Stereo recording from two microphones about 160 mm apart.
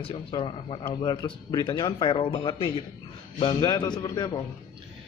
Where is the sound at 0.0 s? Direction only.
35° left (ahead or behind).